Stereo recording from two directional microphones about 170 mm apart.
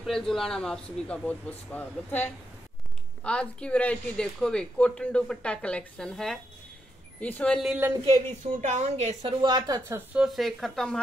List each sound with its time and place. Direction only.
0.0 s a woman's voice: centre (ahead or behind)
8.5 s a woman's voice: 40° right (ahead or behind)
9.4 s a woman's voice: 25° right (ahead or behind); by 11.0 s 5° left (ahead or behind)